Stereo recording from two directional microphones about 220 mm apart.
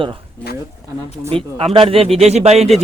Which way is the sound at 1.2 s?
25° right (ahead or behind).